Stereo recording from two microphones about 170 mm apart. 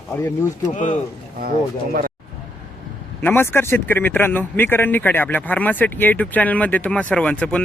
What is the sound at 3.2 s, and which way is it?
Speech, 10° left (ahead or behind).